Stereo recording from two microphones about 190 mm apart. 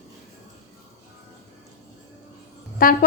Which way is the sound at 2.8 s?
50° left (ahead or behind).